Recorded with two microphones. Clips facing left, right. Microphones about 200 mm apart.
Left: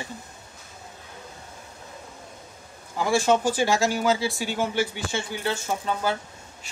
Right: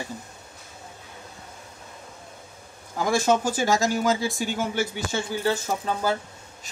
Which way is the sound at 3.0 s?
45° right (ahead or behind).